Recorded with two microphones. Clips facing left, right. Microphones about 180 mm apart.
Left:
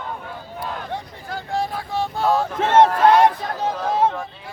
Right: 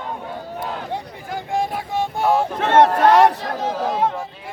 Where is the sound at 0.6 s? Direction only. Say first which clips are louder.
Even; 15° right (ahead or behind).